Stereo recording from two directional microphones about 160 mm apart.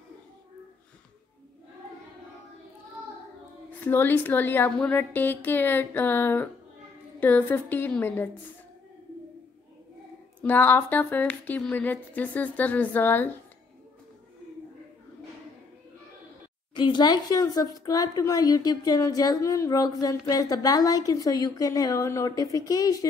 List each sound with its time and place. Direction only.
3.8 s speech: 10° left (ahead or behind)
10.4 s speech: 10° left (ahead or behind)
16.7 s speech: 30° left (ahead or behind)